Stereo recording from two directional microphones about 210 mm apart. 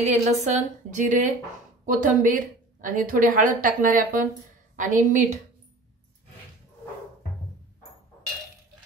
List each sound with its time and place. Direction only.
0.0 s a woman's voice: 35° right (ahead or behind)